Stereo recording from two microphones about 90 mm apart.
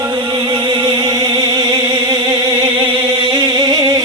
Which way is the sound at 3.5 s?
45° right (ahead or behind).